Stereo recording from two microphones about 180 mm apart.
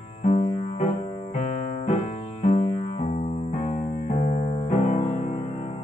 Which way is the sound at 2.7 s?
35° left (ahead or behind).